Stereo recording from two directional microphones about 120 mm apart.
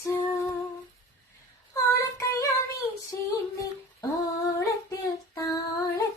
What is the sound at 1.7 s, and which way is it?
Child singing, 25° left (ahead or behind).